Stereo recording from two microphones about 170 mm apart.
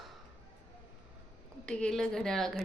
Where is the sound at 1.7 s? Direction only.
5° left (ahead or behind).